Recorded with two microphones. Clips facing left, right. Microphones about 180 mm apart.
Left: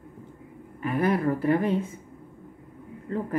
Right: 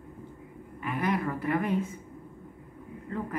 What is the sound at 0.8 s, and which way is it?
A woman's voice, 40° left (ahead or behind).